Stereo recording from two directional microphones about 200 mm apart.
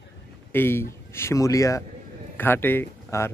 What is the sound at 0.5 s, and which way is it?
Speech, 10° left (ahead or behind).